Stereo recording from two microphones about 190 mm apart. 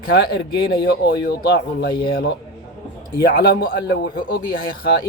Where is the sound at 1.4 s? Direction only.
55° left (ahead or behind).